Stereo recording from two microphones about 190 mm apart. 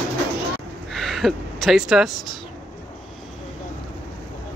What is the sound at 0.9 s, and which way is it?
Speech, centre (ahead or behind).